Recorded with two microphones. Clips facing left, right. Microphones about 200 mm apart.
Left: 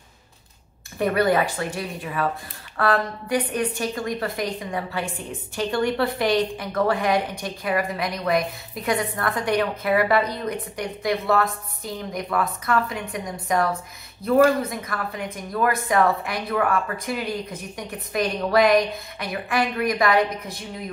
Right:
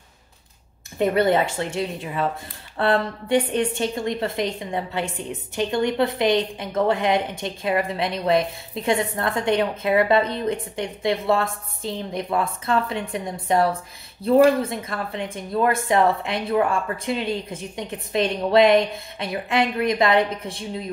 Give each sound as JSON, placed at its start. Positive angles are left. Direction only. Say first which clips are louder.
{"t": 0.9, "sound": "a woman's voice", "louder": "right 1 dB", "side_deg": -25}